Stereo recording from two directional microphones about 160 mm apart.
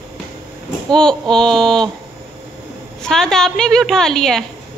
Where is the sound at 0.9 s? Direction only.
5° left (ahead or behind).